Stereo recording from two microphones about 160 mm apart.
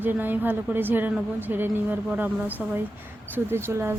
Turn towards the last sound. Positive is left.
turn(degrees=-15)  # may be behind; listen again after turning